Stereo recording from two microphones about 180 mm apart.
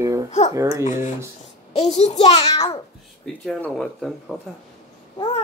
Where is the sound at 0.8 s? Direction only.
45° left (ahead or behind).